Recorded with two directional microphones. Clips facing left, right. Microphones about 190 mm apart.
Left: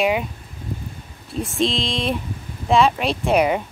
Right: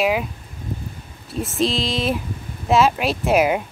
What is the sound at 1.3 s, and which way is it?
Speech, centre (ahead or behind).